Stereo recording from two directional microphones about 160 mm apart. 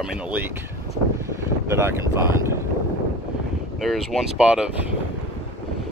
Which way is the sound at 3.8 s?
Centre (ahead or behind).